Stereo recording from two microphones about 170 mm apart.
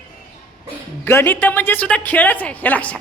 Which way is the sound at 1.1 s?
15° left (ahead or behind).